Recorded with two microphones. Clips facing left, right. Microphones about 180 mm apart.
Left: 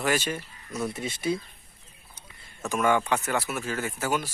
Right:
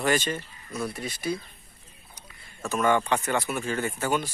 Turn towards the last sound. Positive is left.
turn(degrees=5)  # may be behind; listen again after turning